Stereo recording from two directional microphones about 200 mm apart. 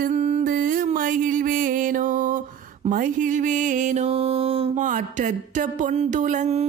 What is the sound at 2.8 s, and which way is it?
Music, 45° right (ahead or behind).